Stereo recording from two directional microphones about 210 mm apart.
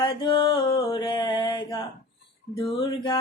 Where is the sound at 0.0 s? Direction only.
25° left (ahead or behind).